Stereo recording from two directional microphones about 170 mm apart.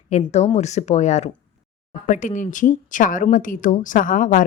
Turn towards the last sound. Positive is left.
turn(degrees=50)  # may be behind; listen again after turning